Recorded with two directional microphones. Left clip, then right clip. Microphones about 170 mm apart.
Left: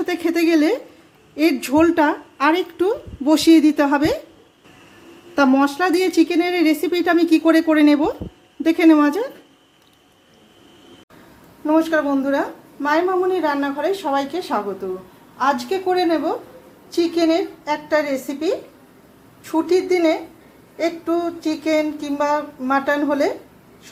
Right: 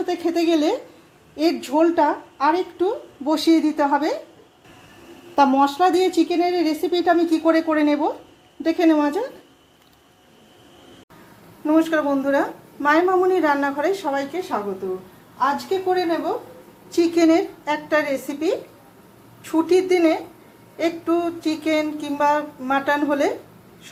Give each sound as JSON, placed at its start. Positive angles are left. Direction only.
{"t": 0.0, "sound": "a woman's voice", "side_deg": 25}
{"t": 5.3, "sound": "speech", "side_deg": 20}
{"t": 11.6, "sound": "speech", "side_deg": 0}
{"t": 14.3, "sound": "a woman's voice", "side_deg": 35}
{"t": 16.9, "sound": "speech", "side_deg": -5}
{"t": 17.8, "sound": "a woman's voice", "side_deg": 5}